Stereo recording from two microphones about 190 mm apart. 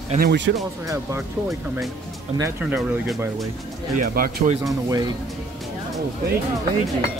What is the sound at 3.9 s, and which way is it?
Speech, 45° right (ahead or behind).